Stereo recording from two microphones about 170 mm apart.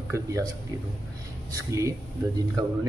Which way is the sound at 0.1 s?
20° right (ahead or behind).